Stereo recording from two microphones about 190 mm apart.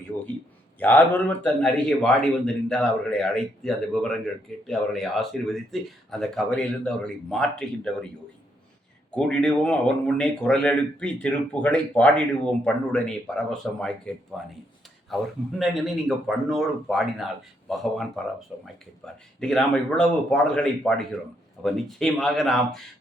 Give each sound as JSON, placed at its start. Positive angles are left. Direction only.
{"t": 0.1, "sound": "a man's voice", "side_deg": 10}
{"t": 9.1, "sound": "a man's voice", "side_deg": 5}